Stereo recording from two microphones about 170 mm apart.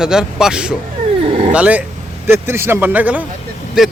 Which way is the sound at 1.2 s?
35° right (ahead or behind).